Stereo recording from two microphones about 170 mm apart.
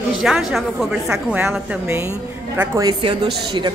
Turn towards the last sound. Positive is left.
turn(degrees=-25)  # may be behind; listen again after turning